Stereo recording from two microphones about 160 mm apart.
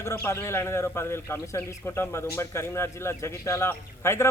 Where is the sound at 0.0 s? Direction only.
15° left (ahead or behind).